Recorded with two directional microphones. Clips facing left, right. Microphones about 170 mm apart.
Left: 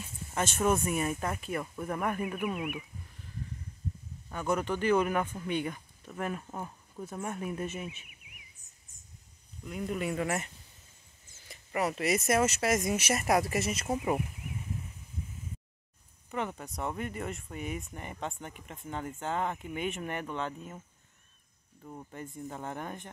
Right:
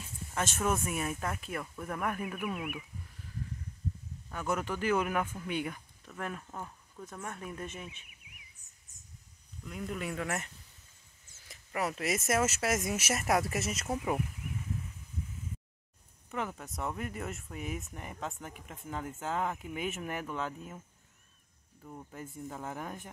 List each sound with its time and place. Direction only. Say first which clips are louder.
0.4 s speech: left 4 dB; centre (ahead or behind)
4.3 s speech: left 3 dB; centre (ahead or behind)
6.0 s speech: left 4 dB; 5° left (ahead or behind)
9.7 s speech: left 4 dB; 5° left (ahead or behind)
16.3 s speech: left 2 dB; centre (ahead or behind)
22.1 s speech: left 1 dB; 5° right (ahead or behind)